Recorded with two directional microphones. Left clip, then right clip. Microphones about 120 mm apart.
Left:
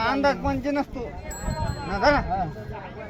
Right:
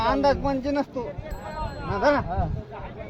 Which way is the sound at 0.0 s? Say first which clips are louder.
Right 1 dB; 20° right (ahead or behind).